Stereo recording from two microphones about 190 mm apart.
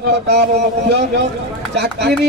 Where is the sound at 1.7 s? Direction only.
60° right (ahead or behind).